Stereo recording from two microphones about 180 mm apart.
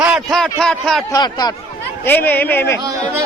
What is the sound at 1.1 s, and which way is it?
Speech, 20° left (ahead or behind).